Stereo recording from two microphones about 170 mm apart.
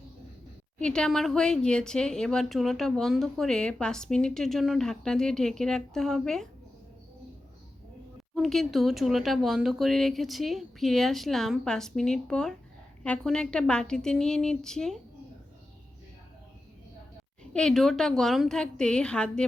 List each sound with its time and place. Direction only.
0.8 s a woman's voice: 5° left (ahead or behind)
8.4 s a woman's voice: centre (ahead or behind)
17.5 s a woman's voice: 5° left (ahead or behind)